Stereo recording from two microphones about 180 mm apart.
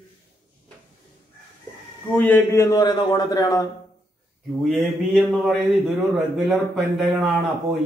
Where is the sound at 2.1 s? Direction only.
10° left (ahead or behind).